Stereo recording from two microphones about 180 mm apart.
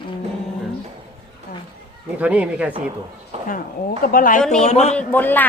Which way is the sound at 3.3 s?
40° right (ahead or behind).